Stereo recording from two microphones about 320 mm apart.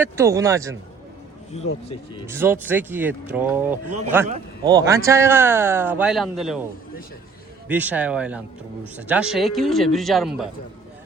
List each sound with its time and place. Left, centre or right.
0.0 s speech: centre
1.5 s speech: centre
2.2 s a man's voice: centre
7.7 s a man's voice: centre